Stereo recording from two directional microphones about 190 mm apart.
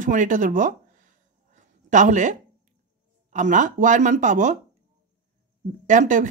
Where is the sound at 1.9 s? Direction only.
40° right (ahead or behind).